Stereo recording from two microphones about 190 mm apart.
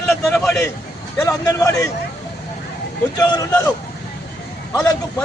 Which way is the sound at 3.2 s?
20° left (ahead or behind).